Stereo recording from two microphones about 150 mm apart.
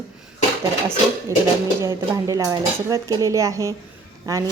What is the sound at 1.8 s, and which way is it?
Speech, 20° right (ahead or behind).